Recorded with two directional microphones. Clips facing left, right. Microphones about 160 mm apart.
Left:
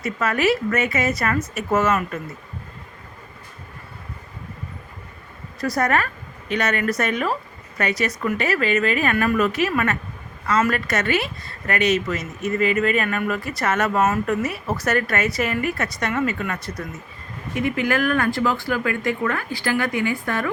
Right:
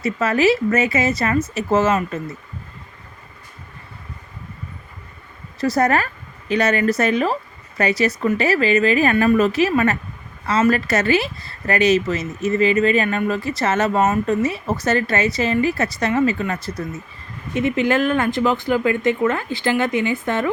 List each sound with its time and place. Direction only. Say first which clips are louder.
0.0 s speech: right 4 dB; 30° right (ahead or behind)
5.5 s speech: right 3 dB; 25° right (ahead or behind)